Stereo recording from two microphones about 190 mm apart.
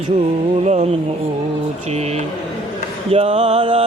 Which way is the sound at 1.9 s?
35° right (ahead or behind).